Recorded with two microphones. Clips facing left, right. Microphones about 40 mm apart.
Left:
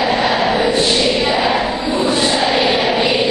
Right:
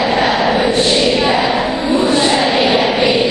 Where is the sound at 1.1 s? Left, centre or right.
Right.